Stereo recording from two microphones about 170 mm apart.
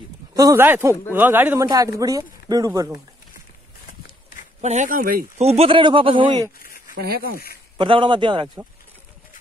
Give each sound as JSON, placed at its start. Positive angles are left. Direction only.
{"t": 0.3, "sound": "a man's voice", "side_deg": -20}
{"t": 4.6, "sound": "speech", "side_deg": -45}
{"t": 5.4, "sound": "speech", "side_deg": -35}
{"t": 7.0, "sound": "speech", "side_deg": -65}
{"t": 7.7, "sound": "speech", "side_deg": -30}